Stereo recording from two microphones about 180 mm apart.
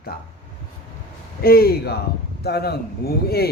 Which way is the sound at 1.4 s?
55° left (ahead or behind).